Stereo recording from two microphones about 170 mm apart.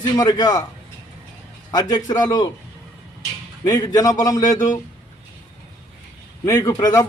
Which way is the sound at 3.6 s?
20° left (ahead or behind).